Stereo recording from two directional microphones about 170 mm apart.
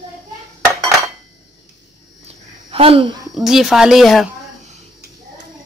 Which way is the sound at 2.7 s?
35° right (ahead or behind).